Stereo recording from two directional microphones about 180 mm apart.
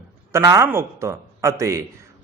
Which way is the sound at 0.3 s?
15° right (ahead or behind).